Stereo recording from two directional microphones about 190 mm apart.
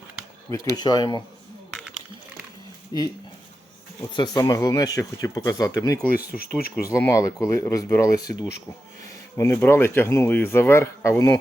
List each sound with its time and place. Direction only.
0.5 s speech: 20° left (ahead or behind)
1.7 s a sound: 5° right (ahead or behind)
2.9 s speech: 20° left (ahead or behind)
4.1 s speech: 20° left (ahead or behind)
6.1 s speech: 50° left (ahead or behind)
6.8 s speech: 15° left (ahead or behind)
9.3 s speech: 10° left (ahead or behind)